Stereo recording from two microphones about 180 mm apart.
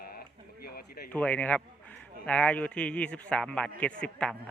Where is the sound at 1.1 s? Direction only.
10° left (ahead or behind).